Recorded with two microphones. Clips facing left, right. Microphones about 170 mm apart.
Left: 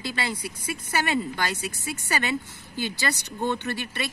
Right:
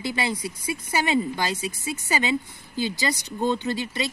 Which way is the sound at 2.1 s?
20° right (ahead or behind).